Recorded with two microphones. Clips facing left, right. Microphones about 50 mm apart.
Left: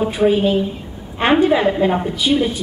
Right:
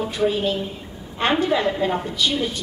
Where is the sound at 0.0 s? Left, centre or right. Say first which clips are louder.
Left 6 dB; left.